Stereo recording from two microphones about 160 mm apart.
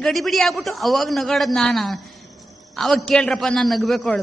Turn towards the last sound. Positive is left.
turn(degrees=0)  # may be behind; listen again after turning